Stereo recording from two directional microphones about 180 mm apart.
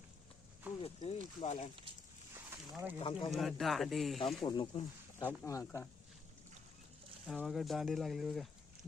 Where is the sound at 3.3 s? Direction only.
Centre (ahead or behind).